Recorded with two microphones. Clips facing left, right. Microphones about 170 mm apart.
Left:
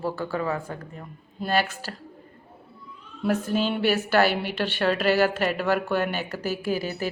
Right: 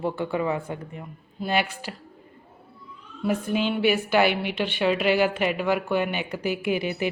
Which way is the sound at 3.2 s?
10° right (ahead or behind).